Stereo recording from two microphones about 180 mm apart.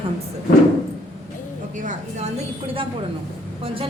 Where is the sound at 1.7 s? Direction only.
45° right (ahead or behind).